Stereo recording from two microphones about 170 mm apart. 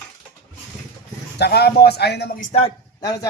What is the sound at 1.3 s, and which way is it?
Speech, 70° left (ahead or behind).